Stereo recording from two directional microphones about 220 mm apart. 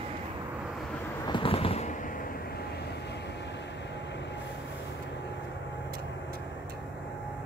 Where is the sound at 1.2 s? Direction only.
20° left (ahead or behind).